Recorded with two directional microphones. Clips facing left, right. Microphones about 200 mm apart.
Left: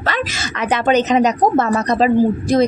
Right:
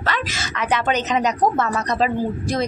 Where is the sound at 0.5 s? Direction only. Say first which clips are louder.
Left 6 dB; 30° left (ahead or behind).